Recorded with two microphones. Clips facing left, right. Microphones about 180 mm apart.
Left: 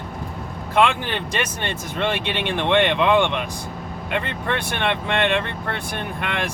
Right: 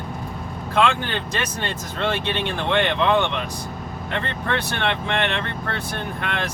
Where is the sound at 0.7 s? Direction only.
15° left (ahead or behind).